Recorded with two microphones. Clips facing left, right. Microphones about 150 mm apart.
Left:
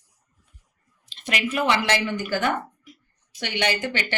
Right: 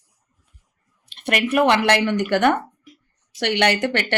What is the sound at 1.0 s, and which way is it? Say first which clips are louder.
A woman's voice: right 5 dB; 60° right (ahead or behind).